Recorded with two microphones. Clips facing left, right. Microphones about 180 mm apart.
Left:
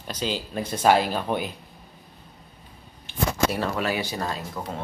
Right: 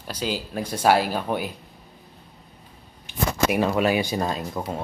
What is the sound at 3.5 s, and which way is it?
Speech, 15° right (ahead or behind).